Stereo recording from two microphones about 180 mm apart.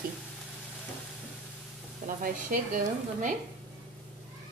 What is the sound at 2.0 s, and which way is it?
Speech, 50° right (ahead or behind).